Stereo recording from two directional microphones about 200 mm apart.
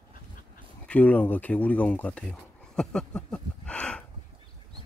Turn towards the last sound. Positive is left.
turn(degrees=5)  # may be behind; listen again after turning